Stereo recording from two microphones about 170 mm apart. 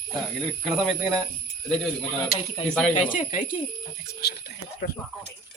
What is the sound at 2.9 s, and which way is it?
Speech, 50° left (ahead or behind).